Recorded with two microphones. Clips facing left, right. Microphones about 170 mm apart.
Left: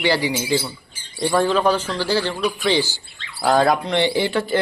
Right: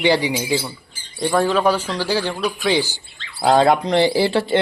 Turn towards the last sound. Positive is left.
turn(degrees=-30)  # may be behind; listen again after turning